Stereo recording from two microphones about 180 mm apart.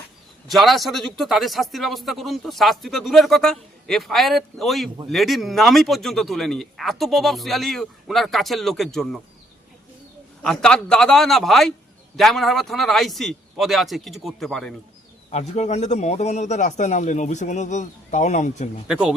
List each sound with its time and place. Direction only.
0.5 s speech: centre (ahead or behind)
10.4 s speech: 5° left (ahead or behind)
15.3 s a man's voice: 40° left (ahead or behind)
18.9 s speech: 5° right (ahead or behind)